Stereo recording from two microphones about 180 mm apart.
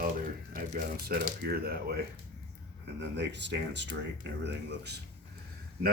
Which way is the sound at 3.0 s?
75° right (ahead or behind).